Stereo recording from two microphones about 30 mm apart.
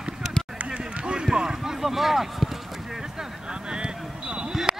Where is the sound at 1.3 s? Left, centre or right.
Right.